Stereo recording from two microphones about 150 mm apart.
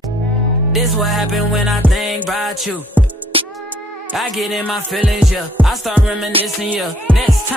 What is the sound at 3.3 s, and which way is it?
Music, 40° right (ahead or behind).